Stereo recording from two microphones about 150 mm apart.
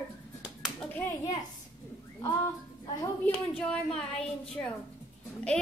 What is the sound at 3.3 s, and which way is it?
Speech, 5° left (ahead or behind).